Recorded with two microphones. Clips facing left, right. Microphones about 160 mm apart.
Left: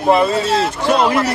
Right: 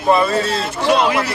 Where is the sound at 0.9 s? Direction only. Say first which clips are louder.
Left 1 dB; centre (ahead or behind).